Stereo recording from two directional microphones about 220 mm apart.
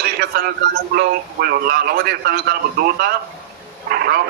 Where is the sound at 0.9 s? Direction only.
45° right (ahead or behind).